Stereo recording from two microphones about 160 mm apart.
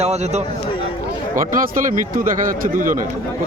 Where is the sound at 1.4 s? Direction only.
55° right (ahead or behind).